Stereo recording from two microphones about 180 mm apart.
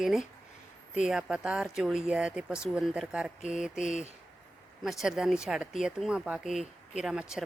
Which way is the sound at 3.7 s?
45° left (ahead or behind).